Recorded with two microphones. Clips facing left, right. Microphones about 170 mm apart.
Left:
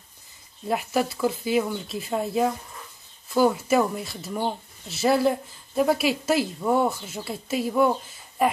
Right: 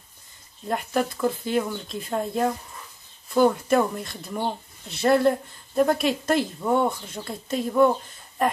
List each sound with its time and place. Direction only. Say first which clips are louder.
0.7 s speech: left 1 dB; 5° left (ahead or behind)